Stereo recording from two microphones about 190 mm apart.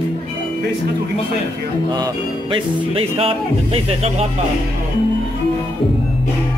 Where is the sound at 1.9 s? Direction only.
25° right (ahead or behind).